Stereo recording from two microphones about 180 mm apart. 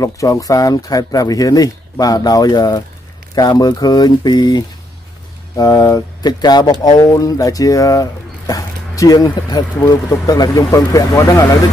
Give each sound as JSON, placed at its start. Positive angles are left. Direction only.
{"t": 0.0, "sound": "speech", "side_deg": 20}